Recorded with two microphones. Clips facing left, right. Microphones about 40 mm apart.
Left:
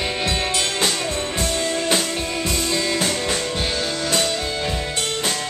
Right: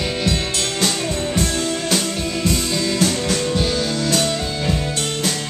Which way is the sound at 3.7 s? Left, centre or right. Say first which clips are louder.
Right 2 dB; centre.